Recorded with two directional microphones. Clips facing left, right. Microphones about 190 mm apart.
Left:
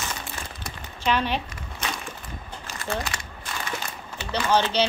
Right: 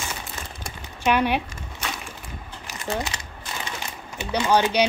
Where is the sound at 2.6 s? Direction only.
15° right (ahead or behind).